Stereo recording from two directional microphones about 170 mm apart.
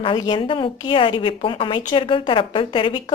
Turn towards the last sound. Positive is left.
turn(degrees=30)  # may be behind; listen again after turning